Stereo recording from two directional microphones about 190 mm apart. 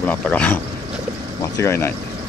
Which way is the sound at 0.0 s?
10° left (ahead or behind).